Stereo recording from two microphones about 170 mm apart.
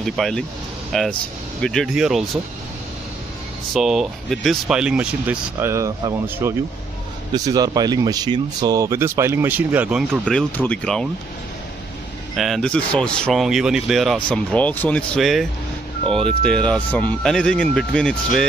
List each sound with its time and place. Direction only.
0.0 s speech: 5° left (ahead or behind)
3.7 s speech: centre (ahead or behind)
10.2 s speech: 10° left (ahead or behind)
12.4 s speech: centre (ahead or behind)